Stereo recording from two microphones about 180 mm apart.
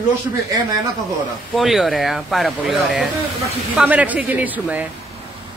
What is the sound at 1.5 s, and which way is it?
A man's voice, centre (ahead or behind).